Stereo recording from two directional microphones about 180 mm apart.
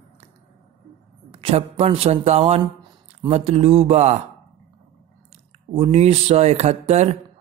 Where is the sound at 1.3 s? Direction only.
30° right (ahead or behind).